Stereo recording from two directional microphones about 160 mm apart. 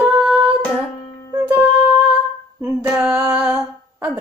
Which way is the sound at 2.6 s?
10° right (ahead or behind).